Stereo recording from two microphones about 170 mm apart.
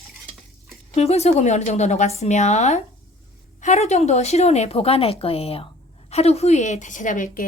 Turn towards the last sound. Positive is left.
turn(degrees=50)  # may be behind; listen again after turning